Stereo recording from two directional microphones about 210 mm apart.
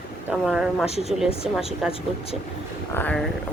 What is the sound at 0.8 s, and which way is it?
Speech, 30° left (ahead or behind).